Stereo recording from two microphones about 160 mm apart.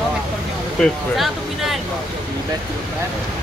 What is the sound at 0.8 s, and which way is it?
Speech, centre (ahead or behind).